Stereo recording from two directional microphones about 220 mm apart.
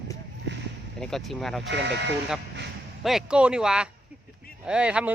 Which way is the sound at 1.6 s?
50° right (ahead or behind).